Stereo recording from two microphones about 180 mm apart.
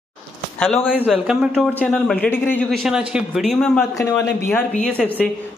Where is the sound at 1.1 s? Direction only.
5° right (ahead or behind).